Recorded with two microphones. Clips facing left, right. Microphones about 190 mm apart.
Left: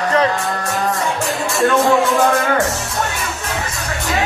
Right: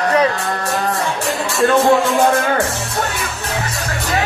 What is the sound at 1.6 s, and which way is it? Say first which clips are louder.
Speech: right 1 dB; centre (ahead or behind).